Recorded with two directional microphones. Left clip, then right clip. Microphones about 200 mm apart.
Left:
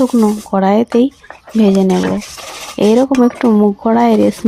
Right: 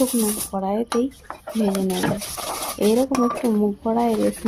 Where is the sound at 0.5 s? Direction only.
20° left (ahead or behind).